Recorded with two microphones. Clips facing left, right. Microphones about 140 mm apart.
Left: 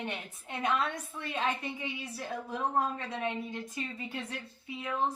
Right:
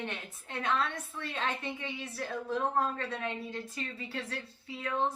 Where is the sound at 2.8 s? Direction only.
15° left (ahead or behind).